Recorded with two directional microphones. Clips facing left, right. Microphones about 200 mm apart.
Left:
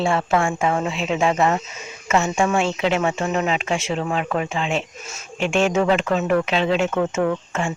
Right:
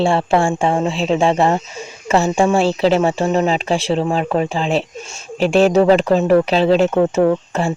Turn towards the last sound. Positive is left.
turn(degrees=-35)  # may be behind; listen again after turning